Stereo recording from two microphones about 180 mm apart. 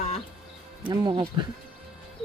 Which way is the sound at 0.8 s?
20° right (ahead or behind).